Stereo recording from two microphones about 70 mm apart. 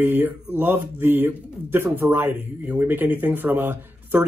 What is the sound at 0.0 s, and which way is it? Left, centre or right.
Speech, right.